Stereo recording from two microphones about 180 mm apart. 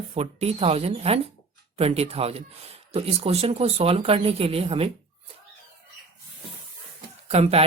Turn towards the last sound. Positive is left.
turn(degrees=-35)  # may be behind; listen again after turning